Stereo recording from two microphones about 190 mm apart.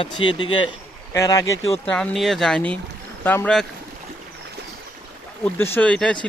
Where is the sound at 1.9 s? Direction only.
Centre (ahead or behind).